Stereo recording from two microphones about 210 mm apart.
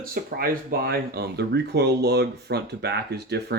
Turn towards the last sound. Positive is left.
turn(degrees=-50)  # may be behind; listen again after turning